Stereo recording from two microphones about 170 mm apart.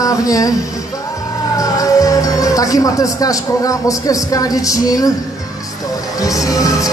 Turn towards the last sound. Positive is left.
turn(degrees=20)  # may be behind; listen again after turning